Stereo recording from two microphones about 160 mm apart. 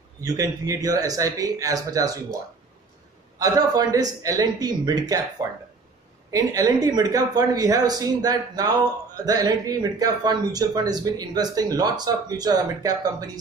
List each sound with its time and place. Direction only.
0.2 s speech: 20° right (ahead or behind)
3.3 s speech: 20° right (ahead or behind)